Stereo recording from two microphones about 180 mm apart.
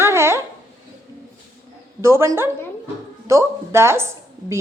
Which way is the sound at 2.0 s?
15° right (ahead or behind).